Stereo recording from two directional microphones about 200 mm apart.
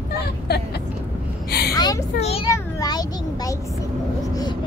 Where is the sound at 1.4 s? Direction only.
55° left (ahead or behind).